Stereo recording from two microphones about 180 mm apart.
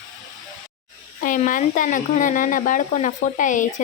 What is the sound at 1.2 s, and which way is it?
Speech, 45° left (ahead or behind).